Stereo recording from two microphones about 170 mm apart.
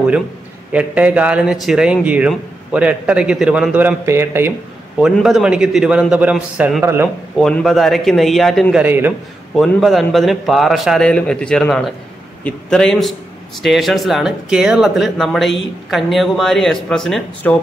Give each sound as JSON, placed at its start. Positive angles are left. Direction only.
{"t": 0.7, "sound": "a man's voice", "side_deg": -10}
{"t": 4.9, "sound": "a man's voice", "side_deg": 0}
{"t": 7.3, "sound": "a man's voice", "side_deg": 0}
{"t": 8.8, "sound": "a man's voice", "side_deg": -10}
{"t": 9.6, "sound": "a man's voice", "side_deg": 0}